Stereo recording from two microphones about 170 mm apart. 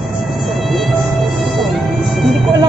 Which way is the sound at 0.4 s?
Centre (ahead or behind).